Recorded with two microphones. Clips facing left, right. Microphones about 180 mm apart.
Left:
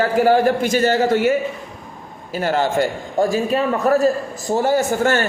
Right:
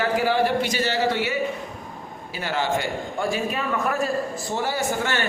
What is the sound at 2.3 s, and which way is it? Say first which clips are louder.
A man's voice: left 7 dB; 45° left (ahead or behind).